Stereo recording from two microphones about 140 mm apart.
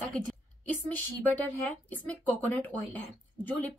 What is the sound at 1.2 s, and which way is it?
Speech, 10° left (ahead or behind).